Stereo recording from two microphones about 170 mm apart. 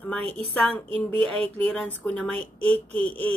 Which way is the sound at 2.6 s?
35° right (ahead or behind).